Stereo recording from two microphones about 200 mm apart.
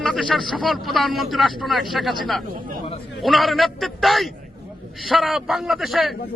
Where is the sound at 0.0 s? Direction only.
Centre (ahead or behind).